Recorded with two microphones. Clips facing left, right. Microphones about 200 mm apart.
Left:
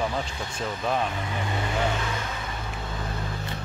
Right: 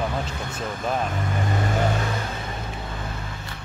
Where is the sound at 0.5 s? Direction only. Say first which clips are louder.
Even; 5° right (ahead or behind).